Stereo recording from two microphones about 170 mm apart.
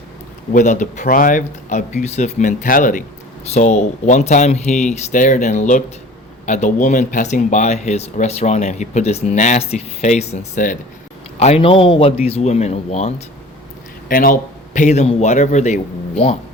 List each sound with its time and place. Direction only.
0.5 s speech: 45° left (ahead or behind)
3.4 s speech: 40° left (ahead or behind)
14.1 s speech: 55° left (ahead or behind); by 16.4 s 35° left (ahead or behind)